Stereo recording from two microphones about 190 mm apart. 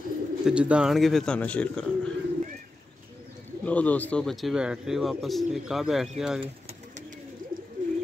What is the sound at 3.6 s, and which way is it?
Speech, 5° left (ahead or behind).